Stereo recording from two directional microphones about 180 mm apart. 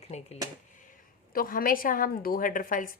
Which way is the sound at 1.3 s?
55° left (ahead or behind).